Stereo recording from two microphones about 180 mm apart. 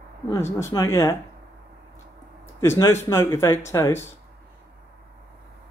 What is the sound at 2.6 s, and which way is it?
Speech, 15° left (ahead or behind).